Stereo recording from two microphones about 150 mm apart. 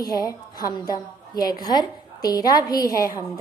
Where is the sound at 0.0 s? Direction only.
25° left (ahead or behind).